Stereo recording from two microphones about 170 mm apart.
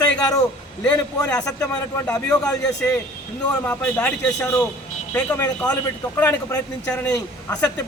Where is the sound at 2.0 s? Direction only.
5° left (ahead or behind).